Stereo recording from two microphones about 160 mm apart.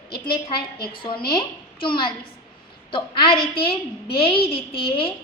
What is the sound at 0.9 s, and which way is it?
A woman's voice, 30° left (ahead or behind).